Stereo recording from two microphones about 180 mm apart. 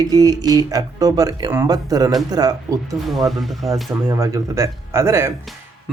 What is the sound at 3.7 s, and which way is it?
Speech, 15° right (ahead or behind).